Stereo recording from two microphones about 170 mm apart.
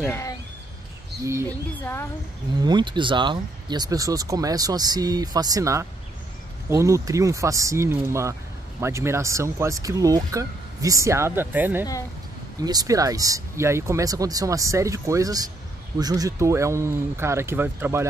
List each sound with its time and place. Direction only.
0.1 s a sound: 20° left (ahead or behind)
2.6 s speech: 25° right (ahead or behind)
12.5 s speech: 20° right (ahead or behind)